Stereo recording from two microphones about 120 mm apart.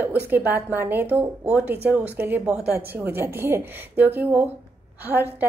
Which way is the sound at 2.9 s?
20° right (ahead or behind).